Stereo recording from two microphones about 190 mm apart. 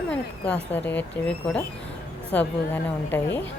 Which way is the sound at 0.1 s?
5° left (ahead or behind).